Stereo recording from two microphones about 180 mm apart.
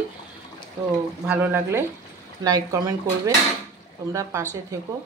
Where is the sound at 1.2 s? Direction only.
10° right (ahead or behind).